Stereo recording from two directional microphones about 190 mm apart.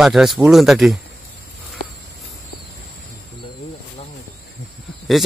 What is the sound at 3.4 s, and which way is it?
Cricket, 25° left (ahead or behind).